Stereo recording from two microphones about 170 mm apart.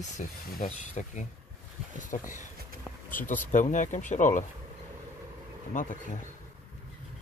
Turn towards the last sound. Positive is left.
turn(degrees=50)  # may be behind; listen again after turning